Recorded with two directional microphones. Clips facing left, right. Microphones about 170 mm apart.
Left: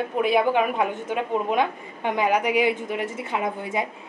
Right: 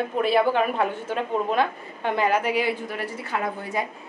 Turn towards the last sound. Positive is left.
turn(degrees=20)  # may be behind; listen again after turning